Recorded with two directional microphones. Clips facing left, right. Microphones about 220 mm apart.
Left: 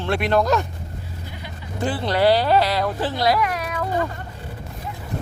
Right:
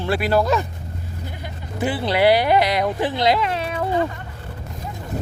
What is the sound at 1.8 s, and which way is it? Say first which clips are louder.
Speech: right 1 dB; 10° right (ahead or behind).